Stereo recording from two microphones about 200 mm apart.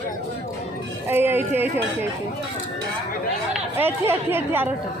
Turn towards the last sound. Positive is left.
turn(degrees=-10)  # may be behind; listen again after turning